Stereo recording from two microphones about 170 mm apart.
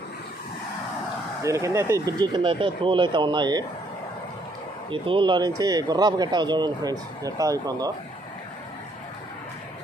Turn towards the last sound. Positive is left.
turn(degrees=-20)  # may be behind; listen again after turning